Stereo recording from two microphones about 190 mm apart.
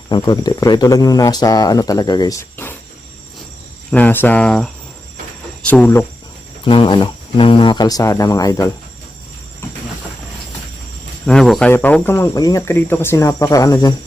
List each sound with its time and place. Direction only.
0.1 s speech: 20° left (ahead or behind)
3.9 s speech: 10° left (ahead or behind)
6.7 s speech: 25° left (ahead or behind)
11.3 s speech: 5° left (ahead or behind)